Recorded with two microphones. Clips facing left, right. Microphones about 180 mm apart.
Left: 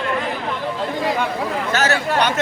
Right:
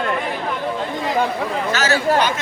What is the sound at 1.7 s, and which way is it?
Speech, 55° left (ahead or behind).